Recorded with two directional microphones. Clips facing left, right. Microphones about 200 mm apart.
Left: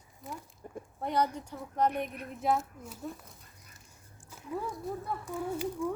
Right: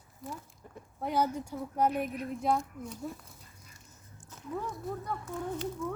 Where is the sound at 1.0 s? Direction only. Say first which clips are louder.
Even; 5° right (ahead or behind).